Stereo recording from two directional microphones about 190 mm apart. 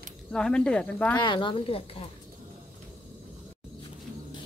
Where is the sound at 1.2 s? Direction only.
25° left (ahead or behind).